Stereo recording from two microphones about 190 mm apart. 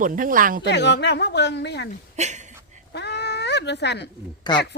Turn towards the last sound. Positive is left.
turn(degrees=20)  # may be behind; listen again after turning